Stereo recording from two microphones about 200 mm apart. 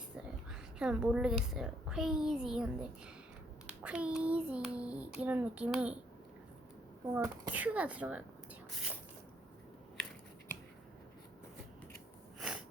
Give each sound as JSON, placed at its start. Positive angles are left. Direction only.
{"t": 0.5, "sound": "a child's voice", "side_deg": -5}
{"t": 7.1, "sound": "speech", "side_deg": -15}
{"t": 12.4, "sound": "a sound", "side_deg": -5}